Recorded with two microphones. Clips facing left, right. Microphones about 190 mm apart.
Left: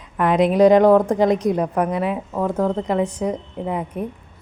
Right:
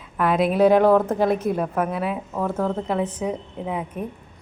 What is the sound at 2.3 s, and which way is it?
Speech, 15° left (ahead or behind).